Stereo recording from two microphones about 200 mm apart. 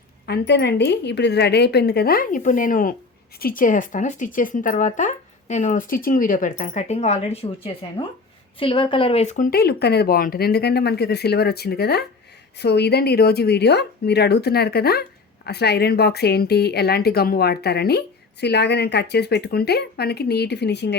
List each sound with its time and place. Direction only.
0.3 s a woman's voice: 60° left (ahead or behind)